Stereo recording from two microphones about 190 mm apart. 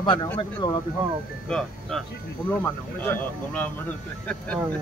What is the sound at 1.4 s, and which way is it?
Speech, 5° left (ahead or behind).